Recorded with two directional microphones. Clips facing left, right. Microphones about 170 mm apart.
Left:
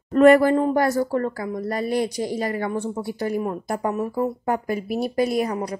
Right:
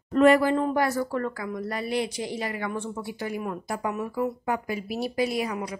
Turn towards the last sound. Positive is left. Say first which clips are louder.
# left 5 dB
turn(degrees=40)  # may be behind; listen again after turning